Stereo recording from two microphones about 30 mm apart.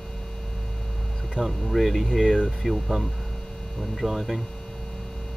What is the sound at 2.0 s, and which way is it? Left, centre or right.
Speech, centre.